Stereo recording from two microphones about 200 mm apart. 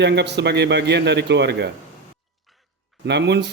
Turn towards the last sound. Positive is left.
turn(degrees=-60)  # may be behind; listen again after turning